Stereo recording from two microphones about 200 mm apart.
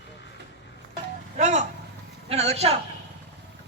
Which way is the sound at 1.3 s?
35° right (ahead or behind).